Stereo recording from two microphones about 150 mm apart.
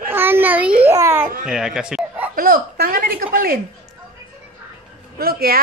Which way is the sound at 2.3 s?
70° right (ahead or behind).